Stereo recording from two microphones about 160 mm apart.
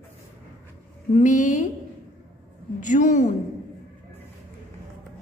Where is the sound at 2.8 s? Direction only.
50° left (ahead or behind).